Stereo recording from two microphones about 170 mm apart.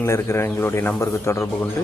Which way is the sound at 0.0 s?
15° left (ahead or behind).